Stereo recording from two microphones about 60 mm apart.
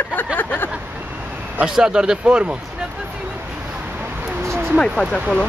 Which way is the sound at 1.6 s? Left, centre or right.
Centre.